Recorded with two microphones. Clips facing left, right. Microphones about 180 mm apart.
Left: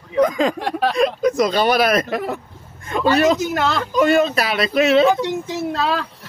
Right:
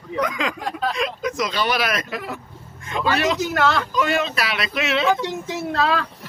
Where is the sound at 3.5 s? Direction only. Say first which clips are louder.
Even; 25° left (ahead or behind).